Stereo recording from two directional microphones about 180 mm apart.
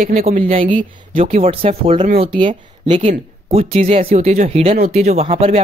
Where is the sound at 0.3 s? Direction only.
35° right (ahead or behind).